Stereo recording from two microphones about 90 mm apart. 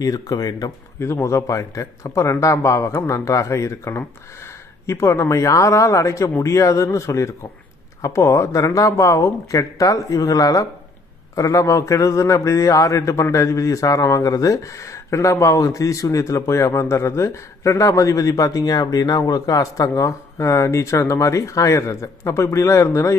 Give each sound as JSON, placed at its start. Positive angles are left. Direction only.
{"t": 0.0, "sound": "speech", "side_deg": 45}
{"t": 0.9, "sound": "a man's voice", "side_deg": 30}